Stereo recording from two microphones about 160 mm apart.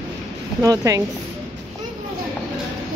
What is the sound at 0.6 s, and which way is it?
Speech, 20° right (ahead or behind).